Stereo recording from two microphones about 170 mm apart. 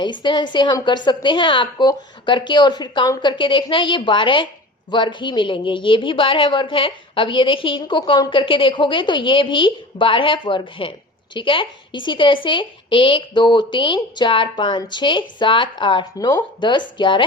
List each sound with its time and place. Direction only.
0.0 s speech: 25° left (ahead or behind)